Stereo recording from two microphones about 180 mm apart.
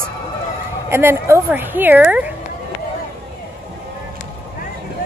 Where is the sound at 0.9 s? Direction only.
15° right (ahead or behind).